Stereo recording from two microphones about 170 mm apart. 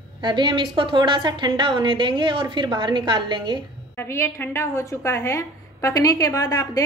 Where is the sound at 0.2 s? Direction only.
30° right (ahead or behind).